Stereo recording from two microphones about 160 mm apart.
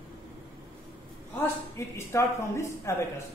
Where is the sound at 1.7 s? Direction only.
15° left (ahead or behind).